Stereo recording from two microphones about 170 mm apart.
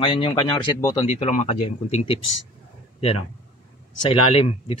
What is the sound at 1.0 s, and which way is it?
Speech, 40° left (ahead or behind).